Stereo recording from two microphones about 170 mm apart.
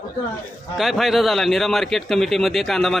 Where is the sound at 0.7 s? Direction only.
Centre (ahead or behind).